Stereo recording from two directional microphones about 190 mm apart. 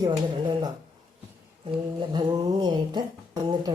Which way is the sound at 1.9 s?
25° right (ahead or behind).